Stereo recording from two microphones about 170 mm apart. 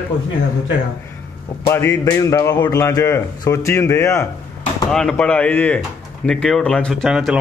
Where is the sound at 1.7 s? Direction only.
15° left (ahead or behind).